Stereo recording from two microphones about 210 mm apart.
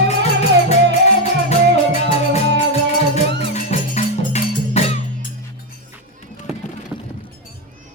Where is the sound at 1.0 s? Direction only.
30° left (ahead or behind).